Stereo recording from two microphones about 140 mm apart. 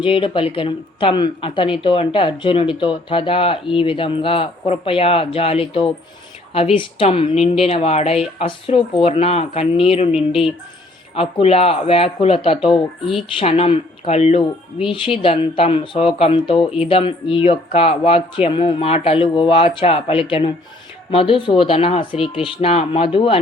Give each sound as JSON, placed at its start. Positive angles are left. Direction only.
{"t": 0.0, "sound": "a woman's voice", "side_deg": 40}
{"t": 7.0, "sound": "speech", "side_deg": 45}
{"t": 11.1, "sound": "a woman's voice", "side_deg": 45}